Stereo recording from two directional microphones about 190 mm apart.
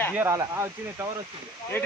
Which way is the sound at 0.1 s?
15° right (ahead or behind).